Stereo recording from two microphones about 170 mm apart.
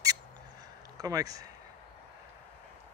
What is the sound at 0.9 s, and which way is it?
Speech, 20° right (ahead or behind).